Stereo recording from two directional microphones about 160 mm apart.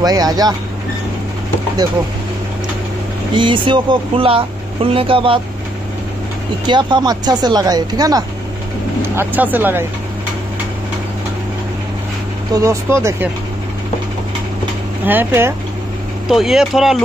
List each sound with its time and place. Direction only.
0.0 s speech: 25° right (ahead or behind)
3.3 s speech: 30° right (ahead or behind)
6.7 s speech: 30° right (ahead or behind); by 9.8 s 10° right (ahead or behind)
12.5 s speech: 20° right (ahead or behind)
15.0 s speech: 15° right (ahead or behind)
16.3 s speech: centre (ahead or behind)